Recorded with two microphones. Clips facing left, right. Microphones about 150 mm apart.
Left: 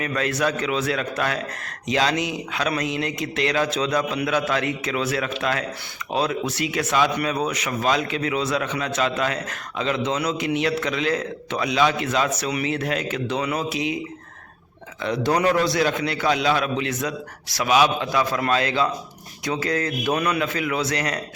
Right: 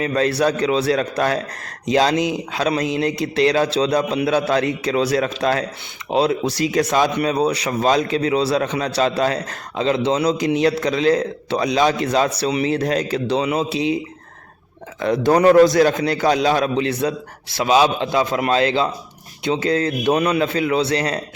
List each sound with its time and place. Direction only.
0.0 s speech: 30° right (ahead or behind)
13.4 s a man's voice: 25° right (ahead or behind)
15.0 s a man's voice: 45° right (ahead or behind); by 21.2 s 30° right (ahead or behind)